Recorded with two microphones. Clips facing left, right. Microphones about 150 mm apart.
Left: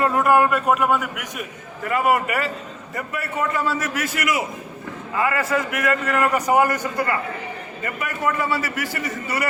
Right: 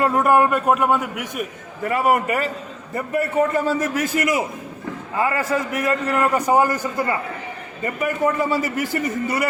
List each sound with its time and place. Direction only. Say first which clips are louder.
0.0 s a man's voice: right 1 dB; 25° right (ahead or behind)